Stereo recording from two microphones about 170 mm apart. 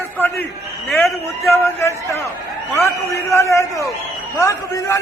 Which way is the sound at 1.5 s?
15° left (ahead or behind).